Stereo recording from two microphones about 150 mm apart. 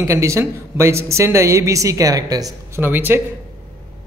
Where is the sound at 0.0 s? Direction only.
20° right (ahead or behind).